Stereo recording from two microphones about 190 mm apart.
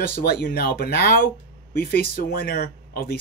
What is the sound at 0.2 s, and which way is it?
Speech, 50° left (ahead or behind).